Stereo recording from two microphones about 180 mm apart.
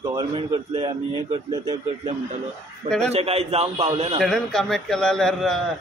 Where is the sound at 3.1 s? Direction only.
35° right (ahead or behind).